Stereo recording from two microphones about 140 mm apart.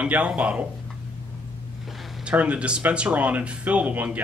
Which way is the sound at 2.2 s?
10° right (ahead or behind).